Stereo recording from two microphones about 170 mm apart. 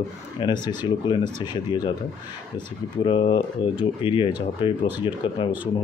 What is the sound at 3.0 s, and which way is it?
Speech, 30° left (ahead or behind).